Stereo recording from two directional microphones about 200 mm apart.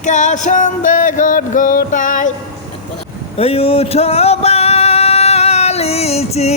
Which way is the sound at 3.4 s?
30° left (ahead or behind).